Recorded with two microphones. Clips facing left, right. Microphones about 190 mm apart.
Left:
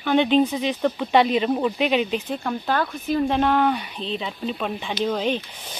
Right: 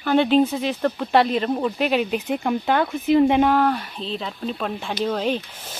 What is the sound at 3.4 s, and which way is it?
Speech, 5° right (ahead or behind).